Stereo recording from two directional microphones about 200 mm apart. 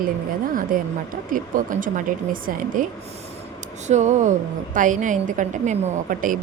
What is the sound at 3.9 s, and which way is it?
A woman's voice, 35° right (ahead or behind).